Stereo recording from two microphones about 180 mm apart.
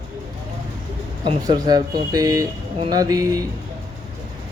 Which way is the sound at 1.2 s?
25° right (ahead or behind).